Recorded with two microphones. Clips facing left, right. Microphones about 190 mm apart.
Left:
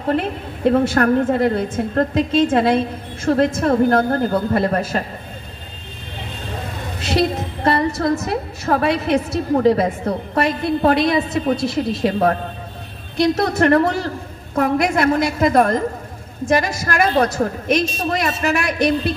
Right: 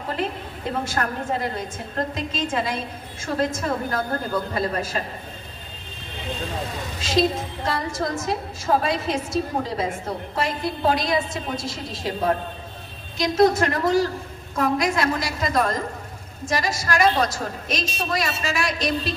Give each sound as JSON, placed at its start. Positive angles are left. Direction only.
{"t": 0.7, "sound": "a woman's voice", "side_deg": 60}
{"t": 7.0, "sound": "a woman's voice", "side_deg": 65}